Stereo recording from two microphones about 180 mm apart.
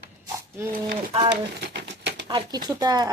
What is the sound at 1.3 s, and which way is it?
Typewriter, 75° right (ahead or behind).